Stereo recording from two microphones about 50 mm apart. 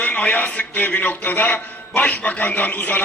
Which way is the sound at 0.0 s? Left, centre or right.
Left.